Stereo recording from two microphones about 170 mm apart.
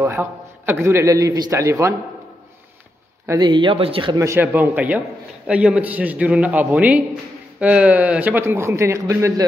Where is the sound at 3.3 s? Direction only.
25° right (ahead or behind).